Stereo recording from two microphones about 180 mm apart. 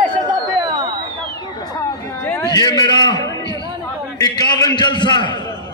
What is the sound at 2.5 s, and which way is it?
A man's voice, 20° left (ahead or behind).